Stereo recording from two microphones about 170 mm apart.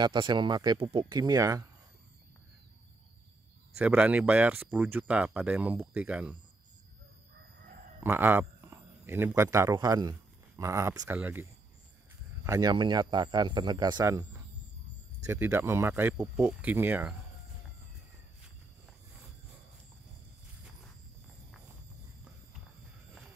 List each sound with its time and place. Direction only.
0.0 s speech: 25° right (ahead or behind)
3.7 s speech: 5° right (ahead or behind)
8.0 s speech: 10° right (ahead or behind)
12.4 s speech: 20° right (ahead or behind)
15.2 s speech: 10° right (ahead or behind)